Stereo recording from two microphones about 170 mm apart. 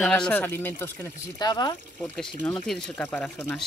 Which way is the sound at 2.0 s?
5° left (ahead or behind).